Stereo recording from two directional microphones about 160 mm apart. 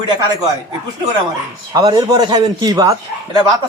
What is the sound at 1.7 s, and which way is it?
A man's voice, 25° right (ahead or behind).